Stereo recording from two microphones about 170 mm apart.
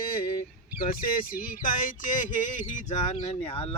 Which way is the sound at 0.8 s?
60° left (ahead or behind).